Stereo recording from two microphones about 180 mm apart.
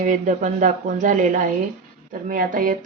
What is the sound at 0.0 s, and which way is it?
A woman's voice, 45° right (ahead or behind).